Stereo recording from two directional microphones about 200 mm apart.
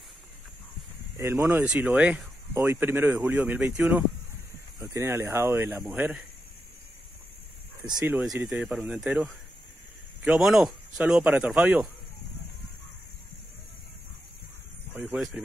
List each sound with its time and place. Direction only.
1.1 s speech: 15° right (ahead or behind)
7.8 s speech: 15° right (ahead or behind)
15.0 s speech: 5° right (ahead or behind)